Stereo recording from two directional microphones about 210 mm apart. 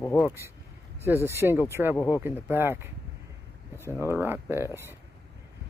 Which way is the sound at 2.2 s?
10° right (ahead or behind).